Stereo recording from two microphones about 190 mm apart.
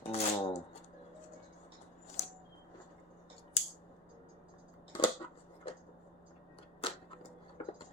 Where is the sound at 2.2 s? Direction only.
35° left (ahead or behind).